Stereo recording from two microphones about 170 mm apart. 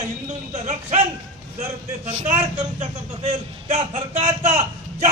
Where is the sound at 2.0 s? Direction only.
40° right (ahead or behind).